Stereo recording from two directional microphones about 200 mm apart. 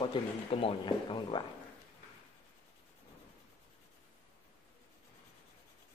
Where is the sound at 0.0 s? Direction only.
25° left (ahead or behind).